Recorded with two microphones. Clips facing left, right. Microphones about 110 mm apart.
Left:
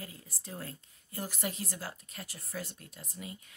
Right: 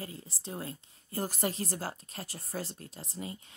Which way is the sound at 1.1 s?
40° right (ahead or behind).